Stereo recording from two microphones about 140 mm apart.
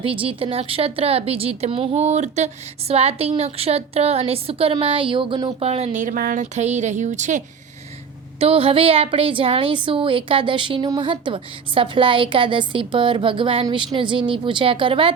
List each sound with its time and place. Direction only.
0.0 s speech: 40° right (ahead or behind); by 7.4 s 60° right (ahead or behind)
8.4 s a woman's voice: 45° right (ahead or behind)